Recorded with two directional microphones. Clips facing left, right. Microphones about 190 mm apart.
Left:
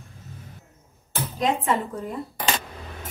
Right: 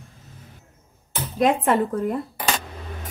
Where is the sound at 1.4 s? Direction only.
55° right (ahead or behind).